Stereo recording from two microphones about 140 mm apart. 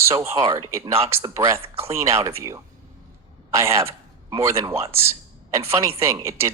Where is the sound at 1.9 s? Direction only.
20° right (ahead or behind).